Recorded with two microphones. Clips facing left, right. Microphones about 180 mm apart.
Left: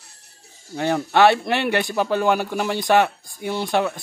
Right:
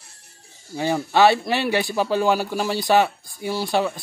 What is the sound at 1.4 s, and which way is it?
Speech, 60° left (ahead or behind).